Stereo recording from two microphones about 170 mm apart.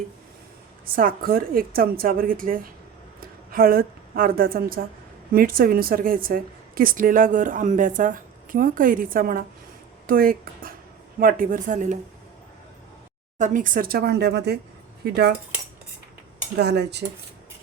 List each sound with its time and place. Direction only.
0.9 s a woman's voice: 60° right (ahead or behind)
13.4 s speech: 50° right (ahead or behind); by 15.3 s 70° right (ahead or behind)
16.6 s speech: 75° right (ahead or behind)